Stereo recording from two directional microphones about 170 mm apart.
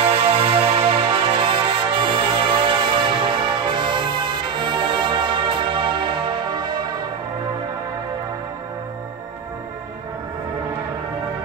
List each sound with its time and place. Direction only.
0.0 s music: 35° right (ahead or behind)